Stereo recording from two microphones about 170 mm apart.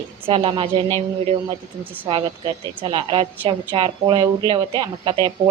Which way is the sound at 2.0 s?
30° right (ahead or behind).